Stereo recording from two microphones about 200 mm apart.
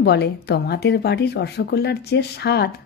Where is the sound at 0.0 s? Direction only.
55° left (ahead or behind).